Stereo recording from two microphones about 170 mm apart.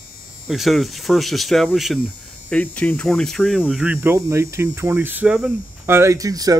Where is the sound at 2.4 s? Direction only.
10° left (ahead or behind).